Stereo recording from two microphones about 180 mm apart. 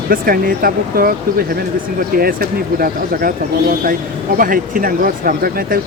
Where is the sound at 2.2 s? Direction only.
55° right (ahead or behind).